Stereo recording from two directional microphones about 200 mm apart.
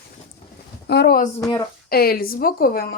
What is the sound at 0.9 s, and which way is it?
A woman's voice, 55° left (ahead or behind).